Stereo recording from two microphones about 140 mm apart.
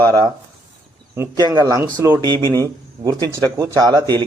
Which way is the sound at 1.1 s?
20° right (ahead or behind).